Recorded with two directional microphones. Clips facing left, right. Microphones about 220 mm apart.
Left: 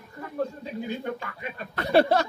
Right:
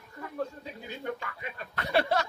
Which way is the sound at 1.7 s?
35° left (ahead or behind).